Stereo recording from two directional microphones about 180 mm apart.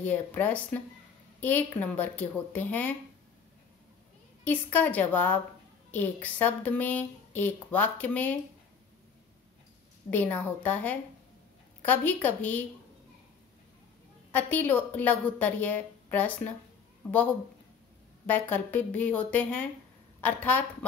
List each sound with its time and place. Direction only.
0.0 s speech: 10° left (ahead or behind)
4.5 s speech: 10° left (ahead or behind)
10.1 s speech: 10° left (ahead or behind)
14.3 s speech: 10° left (ahead or behind)
18.2 s a woman's voice: 10° left (ahead or behind)